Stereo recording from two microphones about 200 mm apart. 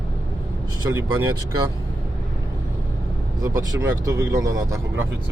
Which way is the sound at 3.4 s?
15° right (ahead or behind).